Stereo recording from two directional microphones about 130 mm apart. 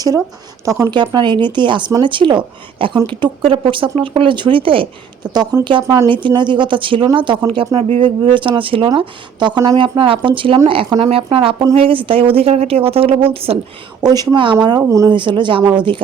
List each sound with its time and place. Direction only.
0.6 s speech: 25° right (ahead or behind); by 8.0 s 50° right (ahead or behind)
8.0 s speech: 40° right (ahead or behind)
14.0 s speech: 30° right (ahead or behind)
15.1 s speech: 40° right (ahead or behind)